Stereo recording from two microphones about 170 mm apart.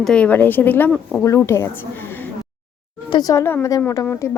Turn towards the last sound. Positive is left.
turn(degrees=15)  # may be behind; listen again after turning